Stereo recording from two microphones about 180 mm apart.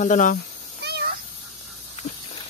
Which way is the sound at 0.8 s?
65° right (ahead or behind).